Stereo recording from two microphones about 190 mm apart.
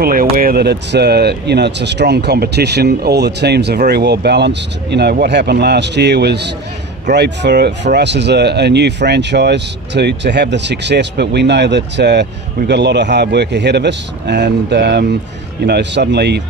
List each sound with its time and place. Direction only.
0.0 s speech: 50° right (ahead or behind)